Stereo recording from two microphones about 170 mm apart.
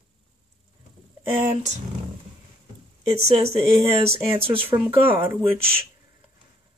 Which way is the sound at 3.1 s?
35° right (ahead or behind).